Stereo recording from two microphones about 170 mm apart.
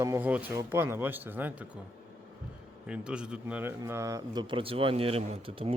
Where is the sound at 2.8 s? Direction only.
5° right (ahead or behind).